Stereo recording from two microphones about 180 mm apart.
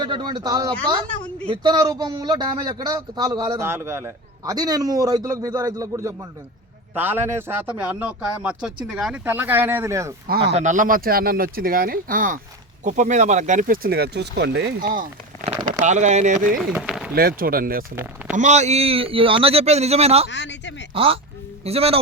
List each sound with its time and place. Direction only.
0.0 s speech: 25° right (ahead or behind)
10.2 s speech: 60° right (ahead or behind)
10.5 s speech: 45° right (ahead or behind); by 14.8 s 80° right
14.8 s speech: 50° right (ahead or behind)
15.8 s speech: 40° right (ahead or behind)
16.7 s speech: 5° right (ahead or behind)
17.2 s speech: 55° right (ahead or behind)
17.9 s speech: 10° right (ahead or behind)
18.3 s speech: 40° right (ahead or behind)
20.2 s speech: 80° left
20.9 s speech: 30° right (ahead or behind)